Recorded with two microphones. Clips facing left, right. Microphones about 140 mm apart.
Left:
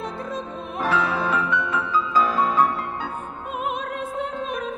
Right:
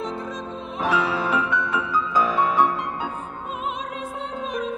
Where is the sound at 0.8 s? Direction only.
Centre (ahead or behind).